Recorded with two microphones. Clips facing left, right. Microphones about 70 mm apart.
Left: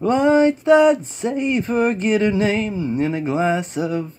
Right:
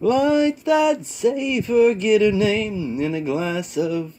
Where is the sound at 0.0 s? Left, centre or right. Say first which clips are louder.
Left 2 dB; left.